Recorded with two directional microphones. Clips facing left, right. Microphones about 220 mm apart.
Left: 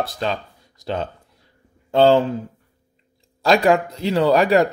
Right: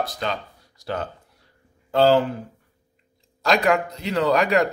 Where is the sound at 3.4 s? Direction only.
30° left (ahead or behind).